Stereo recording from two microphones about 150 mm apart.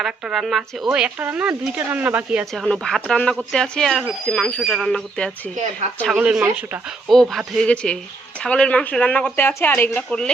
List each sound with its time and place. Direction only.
0.0 s speech: centre (ahead or behind)
2.5 s speech: centre (ahead or behind)
6.1 s speech: 10° right (ahead or behind); by 10.2 s 10° left (ahead or behind)